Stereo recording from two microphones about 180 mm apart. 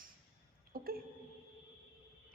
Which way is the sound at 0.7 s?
55° right (ahead or behind).